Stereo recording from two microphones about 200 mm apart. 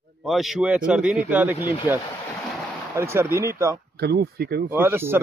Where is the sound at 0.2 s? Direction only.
Centre (ahead or behind).